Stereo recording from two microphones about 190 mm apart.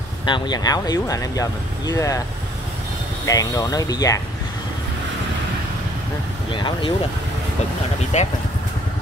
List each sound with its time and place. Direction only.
0.2 s speech: 25° left (ahead or behind)
3.3 s speech: 20° left (ahead or behind)
6.5 s speech: 25° left (ahead or behind)
8.1 s speech: 40° left (ahead or behind)